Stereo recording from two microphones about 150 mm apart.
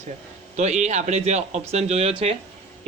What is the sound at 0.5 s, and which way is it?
Speech, 50° right (ahead or behind).